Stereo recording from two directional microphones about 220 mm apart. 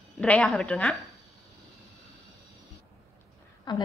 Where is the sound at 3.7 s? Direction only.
20° left (ahead or behind).